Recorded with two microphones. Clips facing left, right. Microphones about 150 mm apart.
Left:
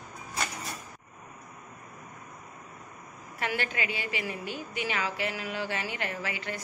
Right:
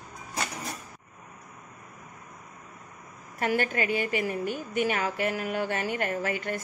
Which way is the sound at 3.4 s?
45° right (ahead or behind).